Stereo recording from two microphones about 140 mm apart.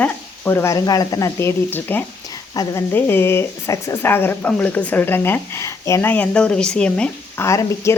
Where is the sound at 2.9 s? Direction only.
15° left (ahead or behind).